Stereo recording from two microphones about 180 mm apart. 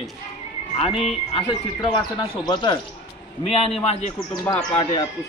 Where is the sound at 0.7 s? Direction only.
30° left (ahead or behind).